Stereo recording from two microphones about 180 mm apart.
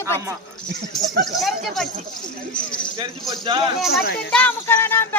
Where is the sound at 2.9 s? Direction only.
25° right (ahead or behind).